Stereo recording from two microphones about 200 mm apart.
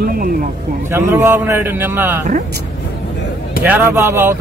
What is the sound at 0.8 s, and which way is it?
A man's voice, 10° right (ahead or behind).